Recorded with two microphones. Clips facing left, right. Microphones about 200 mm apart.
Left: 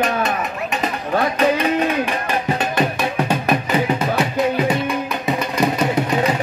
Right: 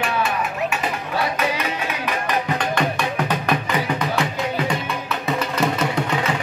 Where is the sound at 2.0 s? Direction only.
25° left (ahead or behind).